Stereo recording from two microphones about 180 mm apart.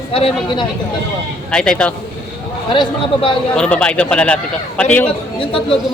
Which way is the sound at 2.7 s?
30° left (ahead or behind).